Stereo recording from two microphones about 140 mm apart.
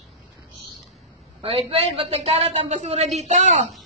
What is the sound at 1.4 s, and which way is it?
A woman's voice, 45° right (ahead or behind).